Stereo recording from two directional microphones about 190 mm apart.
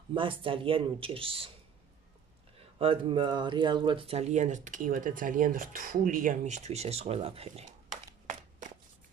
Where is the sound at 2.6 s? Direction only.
30° right (ahead or behind).